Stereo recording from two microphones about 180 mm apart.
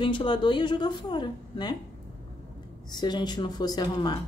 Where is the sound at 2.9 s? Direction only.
25° left (ahead or behind).